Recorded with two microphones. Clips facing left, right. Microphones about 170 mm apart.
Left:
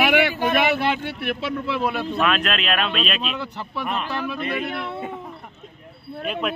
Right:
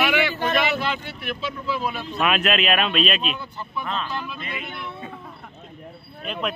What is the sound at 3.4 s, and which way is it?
Speech, 75° left (ahead or behind).